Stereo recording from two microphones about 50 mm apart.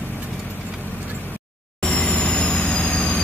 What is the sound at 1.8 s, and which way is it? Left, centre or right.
Vehicle, left.